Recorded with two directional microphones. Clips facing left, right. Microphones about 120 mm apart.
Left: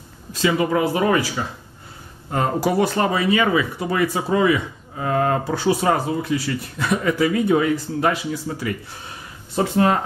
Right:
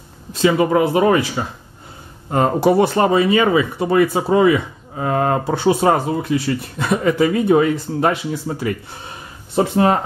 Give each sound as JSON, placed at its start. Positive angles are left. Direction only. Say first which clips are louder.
{"t": 0.4, "sound": "speech", "louder": "right 4 dB", "side_deg": -25}
{"t": 9.6, "sound": "speech", "louder": "right 4 dB", "side_deg": -25}